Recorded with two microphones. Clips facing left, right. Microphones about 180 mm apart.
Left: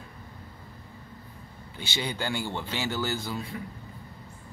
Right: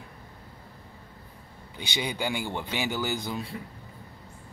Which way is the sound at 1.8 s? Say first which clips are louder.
Right 1 dB; 15° right (ahead or behind).